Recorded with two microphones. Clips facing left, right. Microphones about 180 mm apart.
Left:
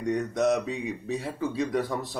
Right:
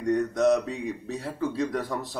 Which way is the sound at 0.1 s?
15° left (ahead or behind).